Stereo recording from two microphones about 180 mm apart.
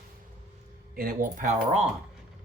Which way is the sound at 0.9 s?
50° right (ahead or behind).